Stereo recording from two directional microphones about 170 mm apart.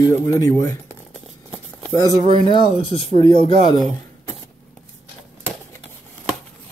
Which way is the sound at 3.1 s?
40° right (ahead or behind).